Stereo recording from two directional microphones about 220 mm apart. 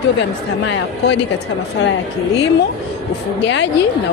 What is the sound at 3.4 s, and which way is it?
Speech, 55° left (ahead or behind).